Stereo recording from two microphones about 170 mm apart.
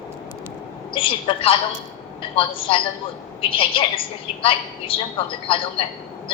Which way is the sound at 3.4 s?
30° left (ahead or behind).